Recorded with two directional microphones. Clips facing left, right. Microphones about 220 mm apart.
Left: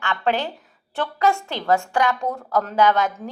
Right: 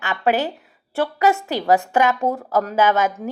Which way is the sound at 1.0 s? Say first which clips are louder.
Right 3 dB; 15° right (ahead or behind).